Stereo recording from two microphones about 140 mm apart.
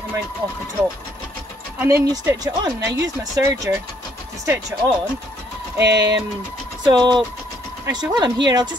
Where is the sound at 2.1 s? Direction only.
25° right (ahead or behind).